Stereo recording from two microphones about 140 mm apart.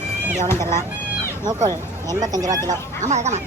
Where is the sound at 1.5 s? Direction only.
25° right (ahead or behind).